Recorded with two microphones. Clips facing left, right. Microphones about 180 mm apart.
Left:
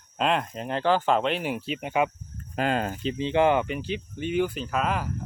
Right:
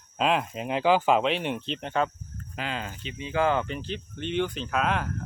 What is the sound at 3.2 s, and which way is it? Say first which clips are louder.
Speech: left 3 dB; 25° left (ahead or behind).